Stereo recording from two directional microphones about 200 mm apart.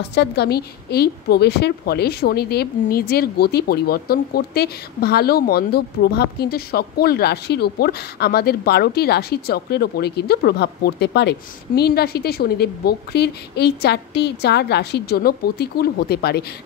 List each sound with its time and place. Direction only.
0.0 s a woman's voice: 55° left (ahead or behind)